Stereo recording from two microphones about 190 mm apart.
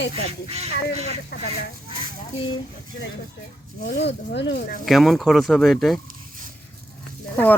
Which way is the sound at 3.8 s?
60° left (ahead or behind).